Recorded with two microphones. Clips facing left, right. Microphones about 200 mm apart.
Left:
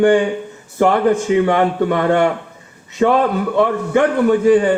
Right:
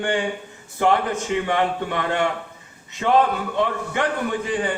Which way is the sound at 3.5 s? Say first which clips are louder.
Left 8 dB; 60° left (ahead or behind).